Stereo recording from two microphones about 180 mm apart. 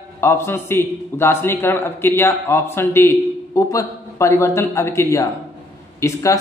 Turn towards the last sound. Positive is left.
turn(degrees=15)  # may be behind; listen again after turning